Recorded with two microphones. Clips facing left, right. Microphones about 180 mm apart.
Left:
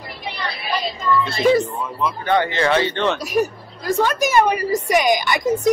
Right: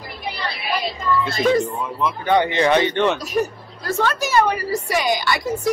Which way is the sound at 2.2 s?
15° right (ahead or behind).